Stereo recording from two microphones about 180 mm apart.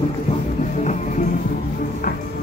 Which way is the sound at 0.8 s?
40° left (ahead or behind).